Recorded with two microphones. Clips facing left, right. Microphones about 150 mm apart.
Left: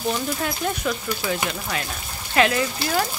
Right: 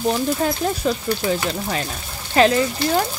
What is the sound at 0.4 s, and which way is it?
Speech, 35° right (ahead or behind).